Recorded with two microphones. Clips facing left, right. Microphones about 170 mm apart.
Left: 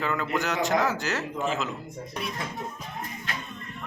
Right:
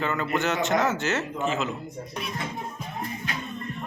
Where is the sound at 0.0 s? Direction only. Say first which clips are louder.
Right 2 dB; centre (ahead or behind).